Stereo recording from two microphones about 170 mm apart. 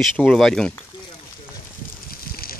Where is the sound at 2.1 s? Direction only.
60° left (ahead or behind).